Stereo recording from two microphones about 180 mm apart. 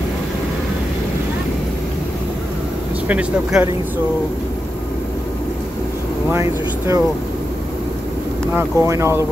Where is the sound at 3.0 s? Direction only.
10° right (ahead or behind).